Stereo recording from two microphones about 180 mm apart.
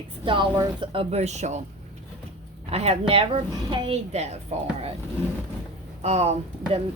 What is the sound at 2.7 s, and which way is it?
Speech, 35° right (ahead or behind).